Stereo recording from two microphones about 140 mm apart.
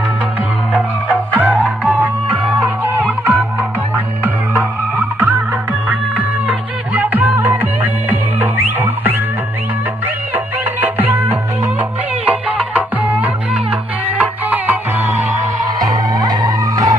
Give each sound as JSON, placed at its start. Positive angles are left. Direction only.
{"t": 0.7, "sound": "music", "side_deg": -10}
{"t": 10.3, "sound": "music", "side_deg": -15}
{"t": 15.8, "sound": "music", "side_deg": -25}